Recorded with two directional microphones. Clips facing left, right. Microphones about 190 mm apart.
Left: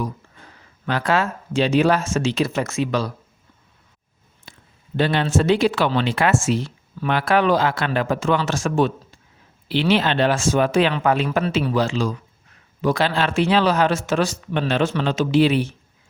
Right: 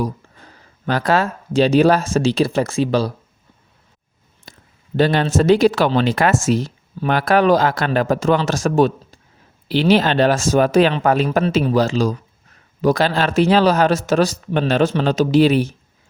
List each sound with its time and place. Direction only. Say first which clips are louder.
0.9 s speech: right 3 dB; 40° right (ahead or behind)
4.5 s a sound: right 3 dB; 40° right (ahead or behind)
4.9 s speech: right 4 dB; 40° right (ahead or behind)